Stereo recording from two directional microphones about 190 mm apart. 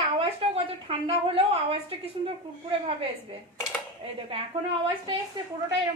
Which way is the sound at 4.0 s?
30° right (ahead or behind).